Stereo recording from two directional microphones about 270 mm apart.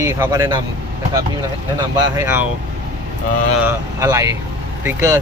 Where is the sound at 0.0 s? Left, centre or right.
Centre.